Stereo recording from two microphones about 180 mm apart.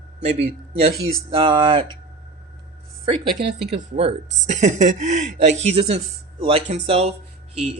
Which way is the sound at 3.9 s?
35° right (ahead or behind).